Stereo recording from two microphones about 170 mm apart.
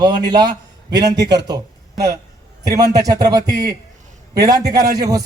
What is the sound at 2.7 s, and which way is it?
Speech, 20° right (ahead or behind).